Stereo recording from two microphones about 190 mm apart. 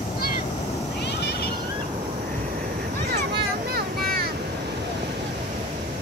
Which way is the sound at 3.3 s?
55° right (ahead or behind).